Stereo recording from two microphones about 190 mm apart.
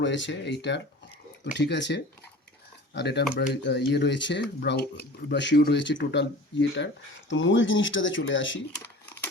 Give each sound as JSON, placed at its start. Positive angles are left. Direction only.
{"t": 0.0, "sound": "speech", "side_deg": 70}
{"t": 7.3, "sound": "speech", "side_deg": 80}